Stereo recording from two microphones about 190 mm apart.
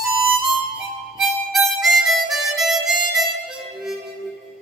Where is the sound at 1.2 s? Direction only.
Centre (ahead or behind).